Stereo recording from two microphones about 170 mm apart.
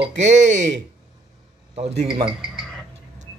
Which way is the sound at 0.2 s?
45° right (ahead or behind).